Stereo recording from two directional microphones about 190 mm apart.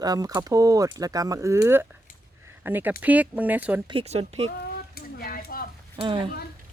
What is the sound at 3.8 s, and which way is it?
Speech, 30° right (ahead or behind).